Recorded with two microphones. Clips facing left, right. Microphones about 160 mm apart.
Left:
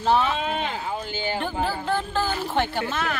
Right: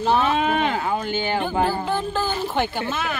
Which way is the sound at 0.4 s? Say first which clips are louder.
Right 6 dB; 60° right (ahead or behind).